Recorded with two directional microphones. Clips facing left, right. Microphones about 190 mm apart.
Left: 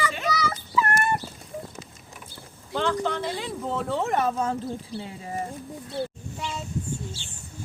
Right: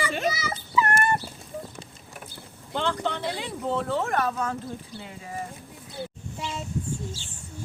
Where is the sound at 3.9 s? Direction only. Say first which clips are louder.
Left 1 dB; 15° left (ahead or behind).